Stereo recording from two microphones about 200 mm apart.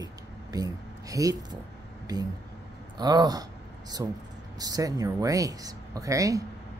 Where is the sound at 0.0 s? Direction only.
20° right (ahead or behind).